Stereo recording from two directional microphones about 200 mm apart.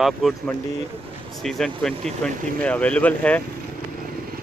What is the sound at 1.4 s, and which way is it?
Speech, centre (ahead or behind).